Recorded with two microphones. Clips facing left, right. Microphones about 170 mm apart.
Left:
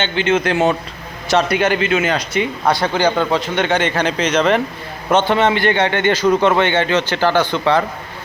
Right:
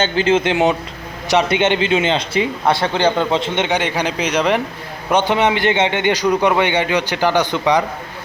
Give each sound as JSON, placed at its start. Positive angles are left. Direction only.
{"t": 0.0, "sound": "speech", "side_deg": -35}
{"t": 0.5, "sound": "a man's voice", "side_deg": -15}